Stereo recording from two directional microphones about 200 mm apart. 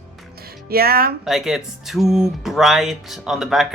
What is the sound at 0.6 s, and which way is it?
Speech, 50° right (ahead or behind).